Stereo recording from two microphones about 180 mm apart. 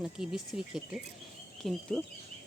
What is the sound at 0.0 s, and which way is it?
Speech, centre (ahead or behind).